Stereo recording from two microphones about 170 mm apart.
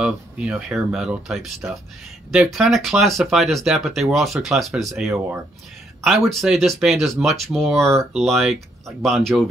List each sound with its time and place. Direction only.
0.0 s speech: 5° right (ahead or behind)